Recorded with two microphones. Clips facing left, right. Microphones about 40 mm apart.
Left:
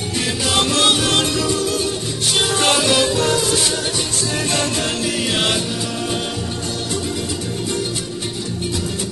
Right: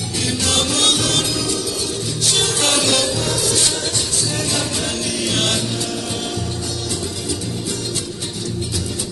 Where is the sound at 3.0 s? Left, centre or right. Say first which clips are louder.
Left 3 dB; left.